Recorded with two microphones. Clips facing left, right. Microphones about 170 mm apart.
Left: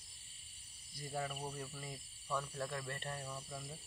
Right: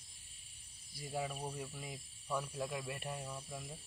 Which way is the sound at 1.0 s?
5° right (ahead or behind).